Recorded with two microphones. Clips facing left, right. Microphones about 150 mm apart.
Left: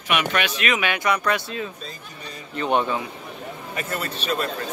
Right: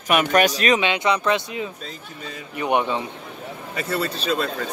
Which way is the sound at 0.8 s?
20° right (ahead or behind).